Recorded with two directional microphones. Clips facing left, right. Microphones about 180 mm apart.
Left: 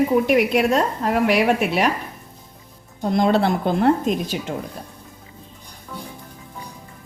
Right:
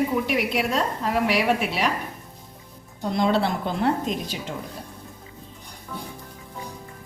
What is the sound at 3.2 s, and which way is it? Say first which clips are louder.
A woman's voice: left 4 dB; 50° left (ahead or behind).